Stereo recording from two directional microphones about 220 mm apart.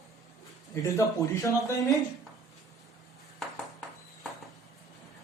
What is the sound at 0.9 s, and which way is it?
Speech, 15° left (ahead or behind).